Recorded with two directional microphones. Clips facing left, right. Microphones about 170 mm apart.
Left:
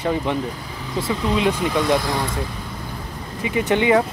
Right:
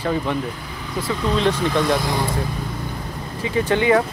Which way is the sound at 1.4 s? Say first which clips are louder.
Right 2 dB; 10° left (ahead or behind).